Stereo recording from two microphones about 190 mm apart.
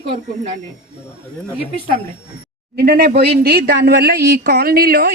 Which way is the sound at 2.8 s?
55° right (ahead or behind).